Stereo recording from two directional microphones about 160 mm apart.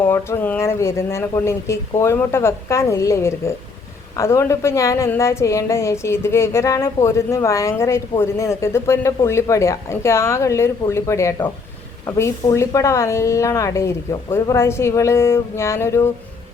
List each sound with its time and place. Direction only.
0.0 s speech: 15° left (ahead or behind)